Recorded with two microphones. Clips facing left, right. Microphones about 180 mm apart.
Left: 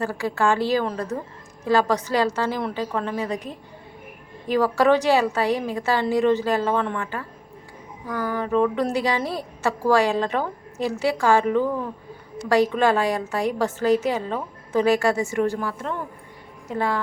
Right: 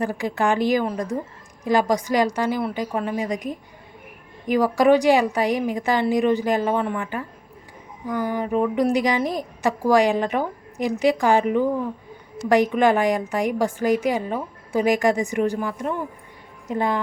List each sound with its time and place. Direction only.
0.0 s a woman's voice: 15° right (ahead or behind)